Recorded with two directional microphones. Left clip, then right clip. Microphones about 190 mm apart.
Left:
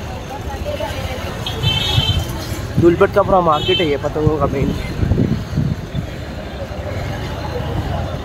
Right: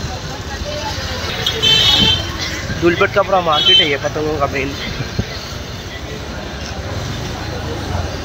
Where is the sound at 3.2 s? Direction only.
10° left (ahead or behind).